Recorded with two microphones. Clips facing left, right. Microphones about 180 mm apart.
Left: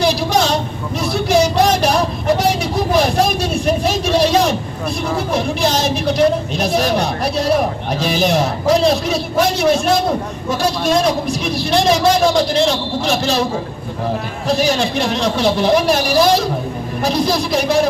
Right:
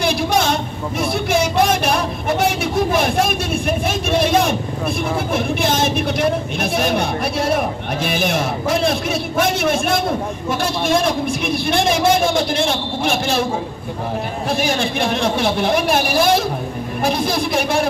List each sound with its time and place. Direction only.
0.0 s a sound: 55° right (ahead or behind)
1.1 s vehicle: 55° right (ahead or behind)
5.3 s a man's voice: 55° right (ahead or behind)
14.5 s a man's voice: 55° right (ahead or behind)